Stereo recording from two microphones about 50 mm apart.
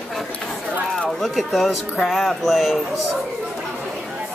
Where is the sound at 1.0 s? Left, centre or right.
Centre.